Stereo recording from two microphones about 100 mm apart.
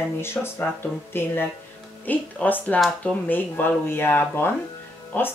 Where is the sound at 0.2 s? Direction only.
25° left (ahead or behind).